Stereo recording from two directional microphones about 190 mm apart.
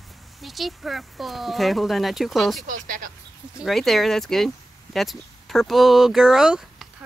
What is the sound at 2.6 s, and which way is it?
Speech, 45° right (ahead or behind).